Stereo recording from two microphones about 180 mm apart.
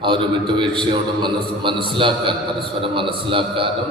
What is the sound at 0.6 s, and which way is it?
A man's voice, 25° right (ahead or behind).